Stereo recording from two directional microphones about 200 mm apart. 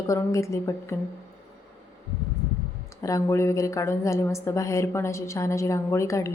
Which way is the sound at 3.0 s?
15° left (ahead or behind).